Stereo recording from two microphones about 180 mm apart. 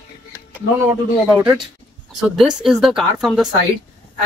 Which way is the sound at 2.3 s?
Centre (ahead or behind).